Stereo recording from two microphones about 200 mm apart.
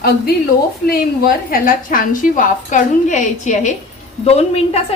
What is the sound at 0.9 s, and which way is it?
A woman's voice, 45° left (ahead or behind).